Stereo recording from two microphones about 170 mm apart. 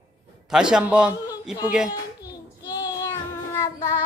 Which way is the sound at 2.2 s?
25° left (ahead or behind).